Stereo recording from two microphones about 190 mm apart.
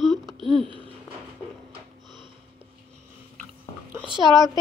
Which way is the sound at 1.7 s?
25° right (ahead or behind).